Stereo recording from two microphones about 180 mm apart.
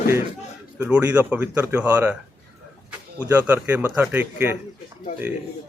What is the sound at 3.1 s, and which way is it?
Speech, 10° right (ahead or behind).